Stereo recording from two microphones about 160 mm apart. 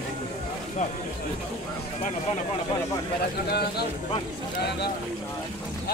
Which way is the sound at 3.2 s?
90° left.